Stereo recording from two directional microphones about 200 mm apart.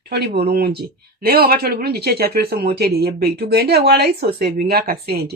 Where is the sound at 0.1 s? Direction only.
55° right (ahead or behind).